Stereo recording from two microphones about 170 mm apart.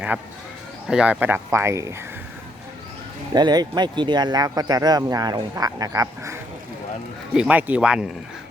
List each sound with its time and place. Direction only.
0.9 s speech: 5° right (ahead or behind)
3.3 s speech: 25° right (ahead or behind); by 8.1 s 5° right (ahead or behind)